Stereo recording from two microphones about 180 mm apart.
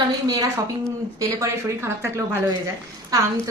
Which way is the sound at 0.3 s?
20° right (ahead or behind).